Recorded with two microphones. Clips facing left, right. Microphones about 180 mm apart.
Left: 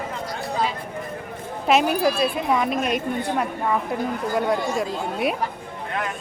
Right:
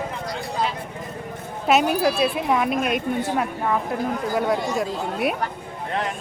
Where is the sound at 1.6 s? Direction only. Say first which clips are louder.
Even; centre (ahead or behind).